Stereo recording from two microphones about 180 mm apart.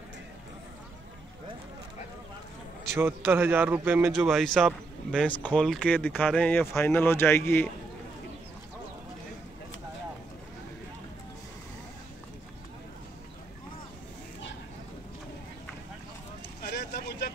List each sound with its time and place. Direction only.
3.0 s a man's voice: 15° right (ahead or behind)
4.2 s speech: centre (ahead or behind)
16.6 s vehicle: 60° left (ahead or behind)